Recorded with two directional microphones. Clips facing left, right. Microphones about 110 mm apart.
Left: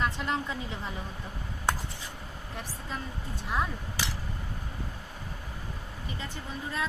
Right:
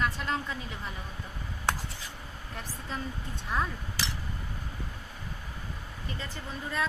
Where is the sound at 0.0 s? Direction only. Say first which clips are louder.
Left 1 dB; 20° left (ahead or behind).